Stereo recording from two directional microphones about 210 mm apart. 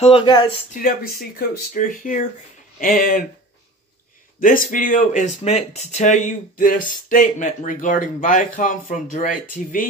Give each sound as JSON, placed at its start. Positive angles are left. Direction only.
{"t": 0.0, "sound": "speech", "side_deg": 25}
{"t": 0.7, "sound": "speech", "side_deg": 45}
{"t": 4.4, "sound": "speech", "side_deg": 40}